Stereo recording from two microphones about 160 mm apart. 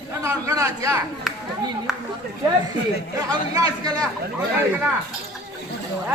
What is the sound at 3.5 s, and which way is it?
Speech, 25° right (ahead or behind).